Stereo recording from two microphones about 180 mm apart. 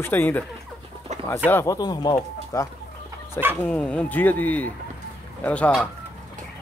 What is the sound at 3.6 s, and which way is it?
Speech, 10° left (ahead or behind).